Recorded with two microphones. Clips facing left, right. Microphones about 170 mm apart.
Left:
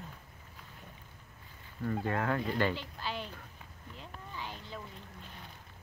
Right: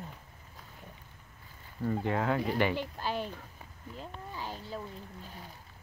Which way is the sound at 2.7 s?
45° right (ahead or behind).